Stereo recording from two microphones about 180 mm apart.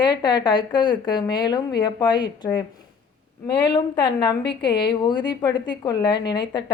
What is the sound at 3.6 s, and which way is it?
Speech, 25° left (ahead or behind).